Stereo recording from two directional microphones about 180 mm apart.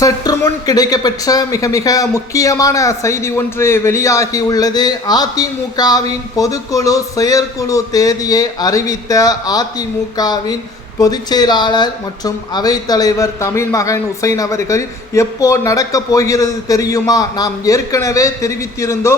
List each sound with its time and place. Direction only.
0.0 s speech: 20° left (ahead or behind)